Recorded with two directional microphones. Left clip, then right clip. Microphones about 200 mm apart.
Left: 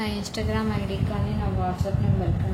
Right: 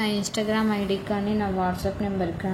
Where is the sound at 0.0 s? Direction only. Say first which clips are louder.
Right 4 dB; 20° right (ahead or behind).